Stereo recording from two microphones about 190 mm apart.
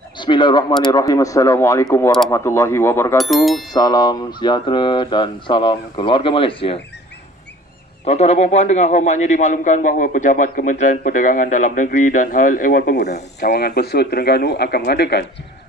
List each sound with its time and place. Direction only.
0.2 s speech: 25° left (ahead or behind)
3.2 s bicycle bell: centre (ahead or behind)
3.7 s speech: 20° left (ahead or behind)
8.0 s a man's voice: 35° left (ahead or behind); by 15.2 s 55° left (ahead or behind)